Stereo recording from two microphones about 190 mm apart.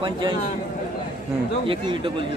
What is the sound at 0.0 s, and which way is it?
Speech, 25° right (ahead or behind).